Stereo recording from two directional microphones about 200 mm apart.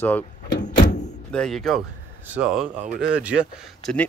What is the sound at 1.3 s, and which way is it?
Speech, 5° left (ahead or behind).